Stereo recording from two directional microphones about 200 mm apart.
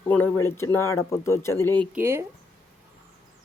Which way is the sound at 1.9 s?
10° right (ahead or behind).